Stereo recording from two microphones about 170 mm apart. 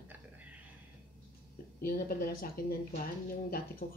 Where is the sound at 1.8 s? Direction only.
60° left (ahead or behind).